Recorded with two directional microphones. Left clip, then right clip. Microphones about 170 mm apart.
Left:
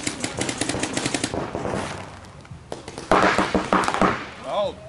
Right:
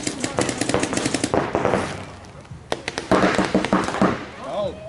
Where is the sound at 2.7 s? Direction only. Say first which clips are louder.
Right 8 dB; 15° right (ahead or behind).